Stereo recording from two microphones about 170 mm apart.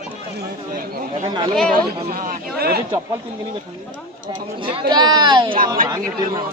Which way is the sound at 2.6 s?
65° right (ahead or behind).